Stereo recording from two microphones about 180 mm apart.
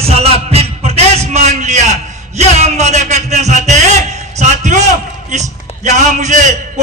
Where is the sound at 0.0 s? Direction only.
35° right (ahead or behind).